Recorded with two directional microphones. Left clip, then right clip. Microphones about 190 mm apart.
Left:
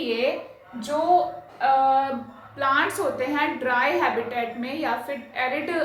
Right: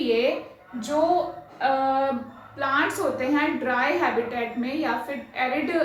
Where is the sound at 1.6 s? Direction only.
25° left (ahead or behind).